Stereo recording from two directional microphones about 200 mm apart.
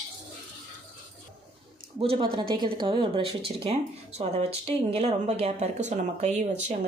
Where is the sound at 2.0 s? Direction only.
30° right (ahead or behind).